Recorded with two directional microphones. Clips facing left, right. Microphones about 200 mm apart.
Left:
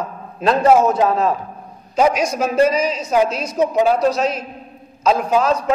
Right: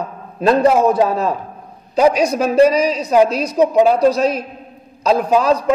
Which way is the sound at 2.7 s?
35° right (ahead or behind).